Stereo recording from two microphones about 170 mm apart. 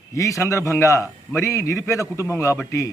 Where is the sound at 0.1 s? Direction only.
20° left (ahead or behind).